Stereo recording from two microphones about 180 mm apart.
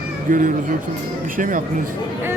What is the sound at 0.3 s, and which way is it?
Speech, 50° right (ahead or behind).